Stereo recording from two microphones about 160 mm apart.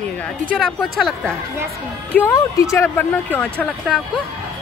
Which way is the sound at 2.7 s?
15° left (ahead or behind).